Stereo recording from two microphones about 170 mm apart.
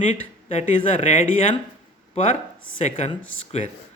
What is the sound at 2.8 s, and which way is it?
Speech, 40° left (ahead or behind).